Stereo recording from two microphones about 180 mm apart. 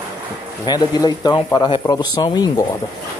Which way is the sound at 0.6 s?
20° left (ahead or behind).